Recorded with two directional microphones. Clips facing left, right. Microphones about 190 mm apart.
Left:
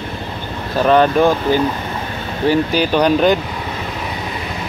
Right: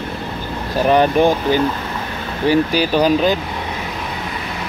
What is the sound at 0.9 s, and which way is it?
Speech, 15° right (ahead or behind).